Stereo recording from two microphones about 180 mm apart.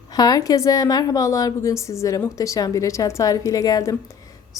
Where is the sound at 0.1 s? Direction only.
20° left (ahead or behind).